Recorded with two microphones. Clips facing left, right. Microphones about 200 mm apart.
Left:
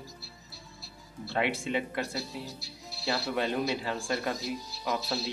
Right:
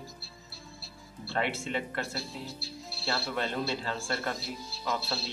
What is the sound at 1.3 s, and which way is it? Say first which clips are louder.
Speech: left 2 dB; 15° left (ahead or behind).